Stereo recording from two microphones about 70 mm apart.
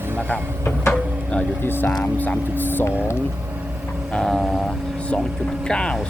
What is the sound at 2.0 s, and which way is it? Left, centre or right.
Speech, left.